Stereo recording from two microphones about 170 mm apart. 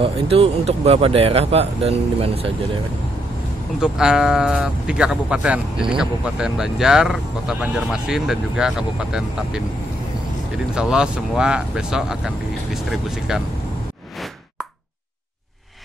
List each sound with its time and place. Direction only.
0.0 s speech: 35° right (ahead or behind)
3.8 s speech: 5° right (ahead or behind)
10.7 s speech: 5° right (ahead or behind)